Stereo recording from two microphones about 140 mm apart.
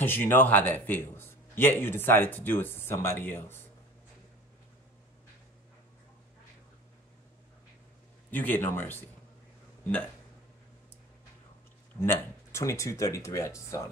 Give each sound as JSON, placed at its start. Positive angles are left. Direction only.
{"t": 0.0, "sound": "a man's voice", "side_deg": 15}
{"t": 8.3, "sound": "a man's voice", "side_deg": 15}
{"t": 12.0, "sound": "speech", "side_deg": 20}